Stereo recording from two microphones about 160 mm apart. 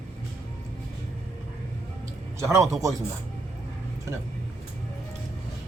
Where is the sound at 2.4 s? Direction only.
20° right (ahead or behind).